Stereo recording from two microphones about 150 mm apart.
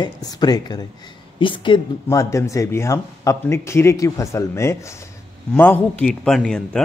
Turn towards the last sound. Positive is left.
turn(degrees=5)  # may be behind; listen again after turning